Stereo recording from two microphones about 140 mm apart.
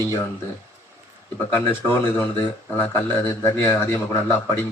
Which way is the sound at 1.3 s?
15° left (ahead or behind).